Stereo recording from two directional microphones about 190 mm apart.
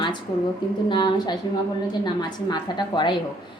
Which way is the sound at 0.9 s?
25° left (ahead or behind).